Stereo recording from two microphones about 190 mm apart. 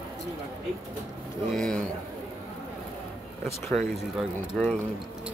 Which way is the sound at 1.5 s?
5° left (ahead or behind).